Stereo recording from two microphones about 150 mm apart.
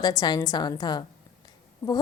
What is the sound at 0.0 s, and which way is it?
A woman's voice, 25° left (ahead or behind).